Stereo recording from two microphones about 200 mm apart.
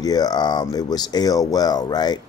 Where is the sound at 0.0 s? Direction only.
20° left (ahead or behind).